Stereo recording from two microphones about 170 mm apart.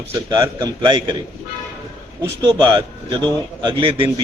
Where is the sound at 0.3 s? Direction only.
25° right (ahead or behind).